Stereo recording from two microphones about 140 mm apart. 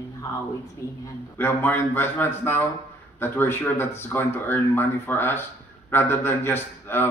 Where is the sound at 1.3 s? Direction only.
15° left (ahead or behind).